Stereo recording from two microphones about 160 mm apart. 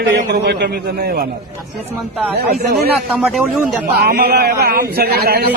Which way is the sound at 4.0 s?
70° right (ahead or behind).